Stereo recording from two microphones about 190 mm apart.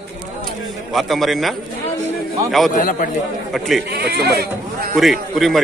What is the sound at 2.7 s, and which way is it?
Speech, 45° left (ahead or behind).